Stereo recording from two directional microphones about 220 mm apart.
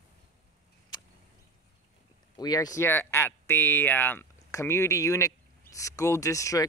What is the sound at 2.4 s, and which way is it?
Speech, 15° left (ahead or behind).